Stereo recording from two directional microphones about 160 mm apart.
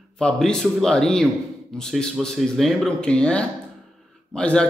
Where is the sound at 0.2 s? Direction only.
5° left (ahead or behind).